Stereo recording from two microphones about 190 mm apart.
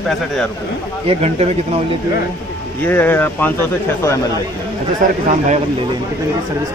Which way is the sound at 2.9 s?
10° left (ahead or behind).